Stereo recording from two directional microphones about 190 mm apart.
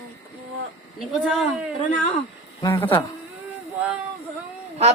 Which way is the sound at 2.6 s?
15° left (ahead or behind).